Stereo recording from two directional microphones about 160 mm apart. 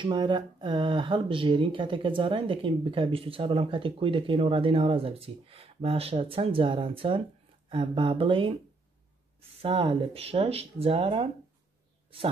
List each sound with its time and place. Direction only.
0.0 s speech: 30° right (ahead or behind)
9.6 s speech: 35° right (ahead or behind)